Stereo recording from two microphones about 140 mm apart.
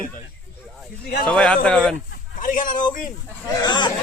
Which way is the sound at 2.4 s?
70° left (ahead or behind).